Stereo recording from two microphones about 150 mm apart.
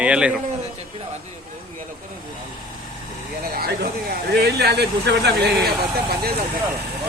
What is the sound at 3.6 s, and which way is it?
Speech, 90° right.